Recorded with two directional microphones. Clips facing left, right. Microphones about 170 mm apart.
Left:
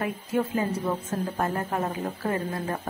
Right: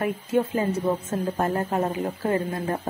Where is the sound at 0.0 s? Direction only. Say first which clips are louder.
Right 3 dB; 25° right (ahead or behind).